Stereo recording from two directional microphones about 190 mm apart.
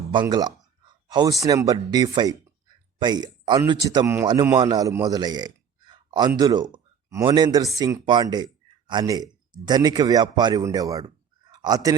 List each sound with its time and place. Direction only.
0.1 s a man's voice: 25° right (ahead or behind)